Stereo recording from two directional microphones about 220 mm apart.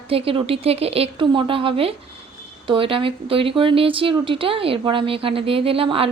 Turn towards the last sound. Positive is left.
turn(degrees=-25)  # may be behind; listen again after turning